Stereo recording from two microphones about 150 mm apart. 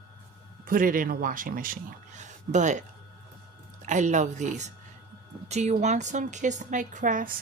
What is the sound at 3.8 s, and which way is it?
A woman's voice, 55° right (ahead or behind).